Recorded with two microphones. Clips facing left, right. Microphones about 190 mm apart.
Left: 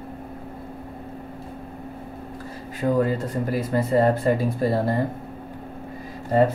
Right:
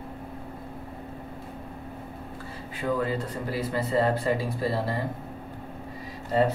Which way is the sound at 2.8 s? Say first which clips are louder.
Left 6 dB; 45° left (ahead or behind).